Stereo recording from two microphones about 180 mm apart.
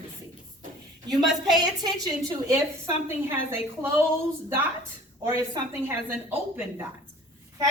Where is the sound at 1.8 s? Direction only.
20° right (ahead or behind).